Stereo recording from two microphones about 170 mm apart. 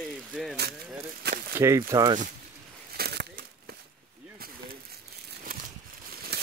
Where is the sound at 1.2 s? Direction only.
70° right (ahead or behind).